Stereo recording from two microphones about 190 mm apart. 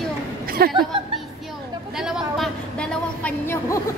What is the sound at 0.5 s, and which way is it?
Chuckle, 50° right (ahead or behind).